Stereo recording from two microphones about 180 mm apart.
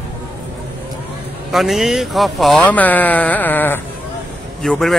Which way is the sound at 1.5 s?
Centre (ahead or behind).